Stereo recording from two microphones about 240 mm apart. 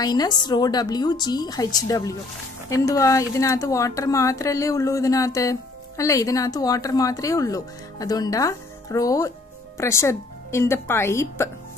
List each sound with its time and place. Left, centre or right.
0.0 s a woman's voice: centre